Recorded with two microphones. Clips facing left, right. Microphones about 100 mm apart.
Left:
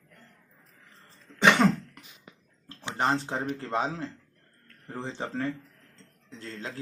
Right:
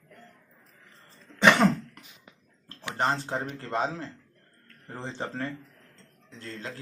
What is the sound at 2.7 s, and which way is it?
Speech, 15° left (ahead or behind).